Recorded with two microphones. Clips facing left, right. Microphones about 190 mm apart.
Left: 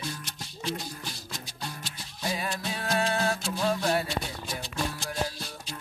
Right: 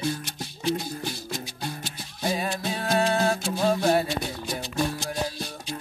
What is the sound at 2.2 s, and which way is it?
Music, 25° right (ahead or behind).